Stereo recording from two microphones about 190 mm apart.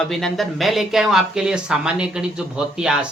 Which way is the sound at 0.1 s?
Centre (ahead or behind).